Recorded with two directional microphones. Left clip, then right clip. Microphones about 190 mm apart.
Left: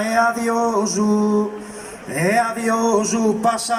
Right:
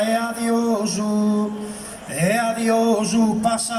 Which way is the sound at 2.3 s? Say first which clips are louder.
Even; 35° left (ahead or behind).